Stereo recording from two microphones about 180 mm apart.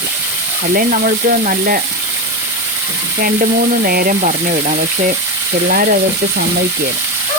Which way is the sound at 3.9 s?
55° right (ahead or behind).